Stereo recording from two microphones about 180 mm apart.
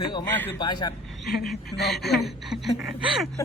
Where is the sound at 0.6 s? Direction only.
25° left (ahead or behind).